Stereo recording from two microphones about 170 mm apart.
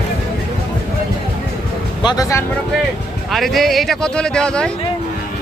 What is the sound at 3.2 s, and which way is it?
Speech, centre (ahead or behind).